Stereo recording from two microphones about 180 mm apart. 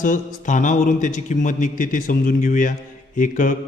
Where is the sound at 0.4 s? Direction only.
45° left (ahead or behind).